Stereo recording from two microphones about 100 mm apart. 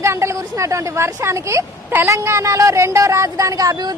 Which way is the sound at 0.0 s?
30° right (ahead or behind).